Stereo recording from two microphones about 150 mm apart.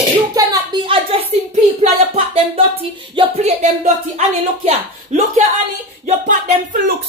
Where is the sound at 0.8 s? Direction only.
40° right (ahead or behind).